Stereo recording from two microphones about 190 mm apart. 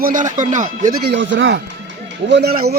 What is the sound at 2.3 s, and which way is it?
Speech, 55° right (ahead or behind).